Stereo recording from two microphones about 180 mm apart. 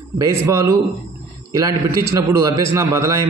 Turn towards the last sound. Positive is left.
turn(degrees=-15)  # may be behind; listen again after turning